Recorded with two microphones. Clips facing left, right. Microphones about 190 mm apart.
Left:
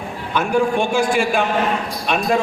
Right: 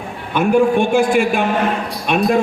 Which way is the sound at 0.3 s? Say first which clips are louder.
Right 4 dB; 55° right (ahead or behind).